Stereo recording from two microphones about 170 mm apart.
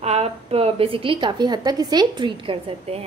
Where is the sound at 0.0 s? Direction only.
40° right (ahead or behind).